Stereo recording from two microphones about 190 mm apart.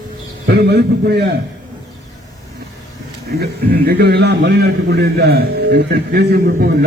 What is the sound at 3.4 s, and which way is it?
A man's voice, 60° right (ahead or behind).